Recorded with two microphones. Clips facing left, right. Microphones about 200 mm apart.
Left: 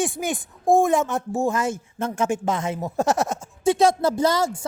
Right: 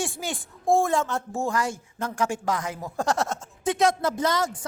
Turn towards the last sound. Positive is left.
turn(degrees=30)  # may be behind; listen again after turning